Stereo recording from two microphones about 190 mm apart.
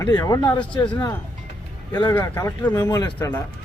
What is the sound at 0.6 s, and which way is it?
Speech, 5° left (ahead or behind).